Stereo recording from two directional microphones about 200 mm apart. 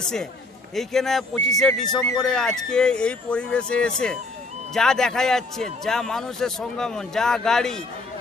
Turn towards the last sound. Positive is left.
turn(degrees=5)  # may be behind; listen again after turning